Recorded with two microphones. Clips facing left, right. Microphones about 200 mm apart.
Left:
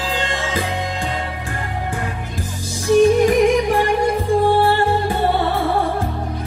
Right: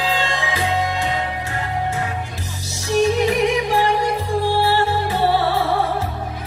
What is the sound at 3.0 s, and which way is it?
Music, 50° left (ahead or behind).